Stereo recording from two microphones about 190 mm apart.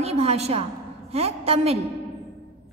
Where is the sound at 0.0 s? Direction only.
35° right (ahead or behind).